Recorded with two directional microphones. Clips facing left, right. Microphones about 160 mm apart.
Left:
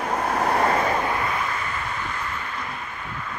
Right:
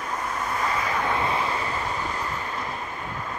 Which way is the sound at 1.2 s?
25° right (ahead or behind).